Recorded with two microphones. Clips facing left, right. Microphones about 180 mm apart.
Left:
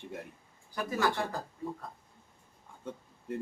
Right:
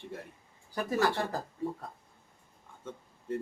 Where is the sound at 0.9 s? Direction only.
35° right (ahead or behind).